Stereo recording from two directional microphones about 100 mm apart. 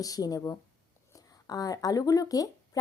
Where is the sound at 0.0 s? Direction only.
35° left (ahead or behind).